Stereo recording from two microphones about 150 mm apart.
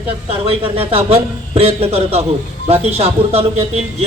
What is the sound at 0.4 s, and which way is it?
A man's voice, 40° right (ahead or behind).